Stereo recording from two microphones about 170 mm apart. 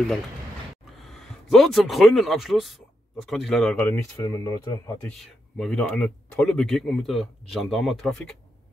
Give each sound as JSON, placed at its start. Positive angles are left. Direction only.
{"t": 1.0, "sound": "a man's voice", "side_deg": 0}
{"t": 3.7, "sound": "speech", "side_deg": 15}
{"t": 5.2, "sound": "speech", "side_deg": 5}